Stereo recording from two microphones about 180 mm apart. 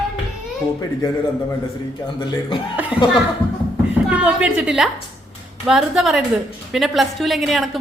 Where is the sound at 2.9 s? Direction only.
5° right (ahead or behind).